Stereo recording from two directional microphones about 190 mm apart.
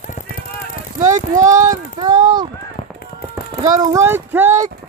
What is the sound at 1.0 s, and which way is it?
Speech, 40° right (ahead or behind).